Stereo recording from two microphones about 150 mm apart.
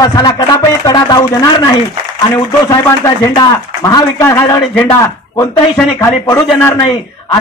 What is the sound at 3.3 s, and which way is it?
A man's voice, 25° left (ahead or behind).